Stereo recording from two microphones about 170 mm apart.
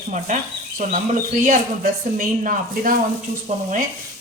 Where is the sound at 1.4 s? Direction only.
50° right (ahead or behind).